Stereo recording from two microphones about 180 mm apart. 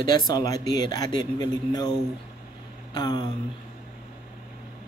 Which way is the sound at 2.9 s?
25° left (ahead or behind).